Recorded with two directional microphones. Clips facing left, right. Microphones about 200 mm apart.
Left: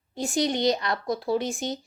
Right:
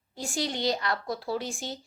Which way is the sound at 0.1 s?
20° left (ahead or behind).